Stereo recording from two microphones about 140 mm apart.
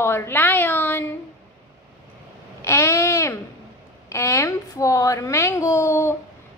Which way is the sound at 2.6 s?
20° left (ahead or behind).